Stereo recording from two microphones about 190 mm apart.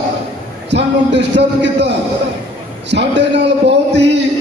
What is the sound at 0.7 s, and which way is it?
A man's voice, 65° right (ahead or behind).